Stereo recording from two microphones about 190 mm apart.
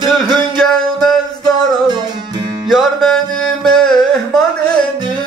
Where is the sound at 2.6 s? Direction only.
Centre (ahead or behind).